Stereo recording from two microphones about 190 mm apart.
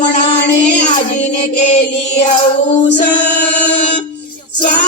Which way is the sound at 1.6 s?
40° left (ahead or behind).